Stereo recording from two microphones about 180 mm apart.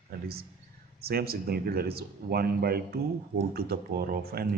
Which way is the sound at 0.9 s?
60° right (ahead or behind).